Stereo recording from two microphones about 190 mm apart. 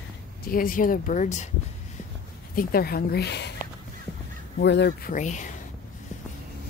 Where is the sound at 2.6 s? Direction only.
50° left (ahead or behind).